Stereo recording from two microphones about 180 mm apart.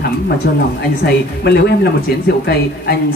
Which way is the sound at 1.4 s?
65° left (ahead or behind).